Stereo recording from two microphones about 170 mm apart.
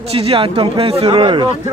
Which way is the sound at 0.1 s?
35° right (ahead or behind).